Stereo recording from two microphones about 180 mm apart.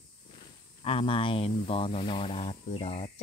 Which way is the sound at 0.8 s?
30° left (ahead or behind).